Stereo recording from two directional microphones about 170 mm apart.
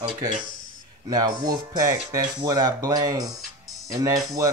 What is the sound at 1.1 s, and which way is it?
Speech, 25° right (ahead or behind).